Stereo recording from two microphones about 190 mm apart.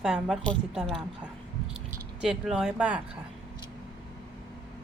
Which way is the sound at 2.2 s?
Centre (ahead or behind).